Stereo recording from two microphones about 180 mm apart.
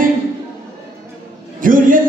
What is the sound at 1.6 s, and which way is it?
Speech, 50° right (ahead or behind).